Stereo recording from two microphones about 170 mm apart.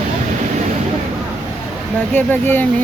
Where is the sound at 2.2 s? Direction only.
10° left (ahead or behind).